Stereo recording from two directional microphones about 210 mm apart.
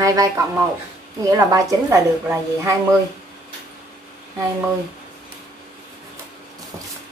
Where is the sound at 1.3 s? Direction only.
15° right (ahead or behind).